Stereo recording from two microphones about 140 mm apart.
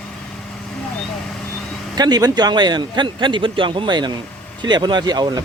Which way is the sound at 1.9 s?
30° right (ahead or behind).